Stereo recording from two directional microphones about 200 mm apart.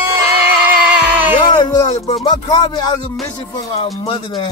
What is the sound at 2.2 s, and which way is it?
Speech, 20° left (ahead or behind).